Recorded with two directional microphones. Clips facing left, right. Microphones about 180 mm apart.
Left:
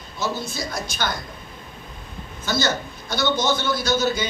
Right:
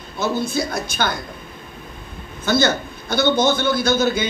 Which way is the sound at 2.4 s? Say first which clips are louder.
Right 5 dB; 55° right (ahead or behind).